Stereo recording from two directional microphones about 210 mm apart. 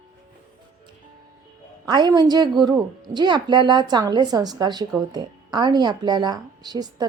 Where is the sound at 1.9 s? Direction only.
20° right (ahead or behind).